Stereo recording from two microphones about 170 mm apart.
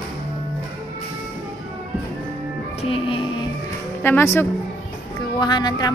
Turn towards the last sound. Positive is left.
turn(degrees=25)  # may be behind; listen again after turning